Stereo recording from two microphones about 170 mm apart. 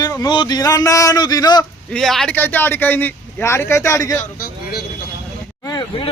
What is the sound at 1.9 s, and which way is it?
Speech, centre (ahead or behind).